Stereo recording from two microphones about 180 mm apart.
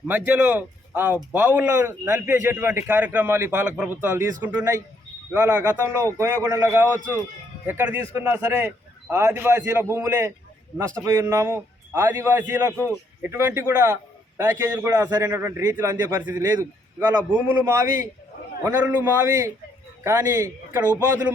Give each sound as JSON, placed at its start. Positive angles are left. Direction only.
{"t": 0.1, "sound": "a man's voice", "side_deg": -10}